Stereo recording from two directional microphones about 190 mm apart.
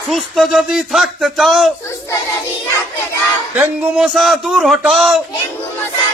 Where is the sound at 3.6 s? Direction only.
Centre (ahead or behind).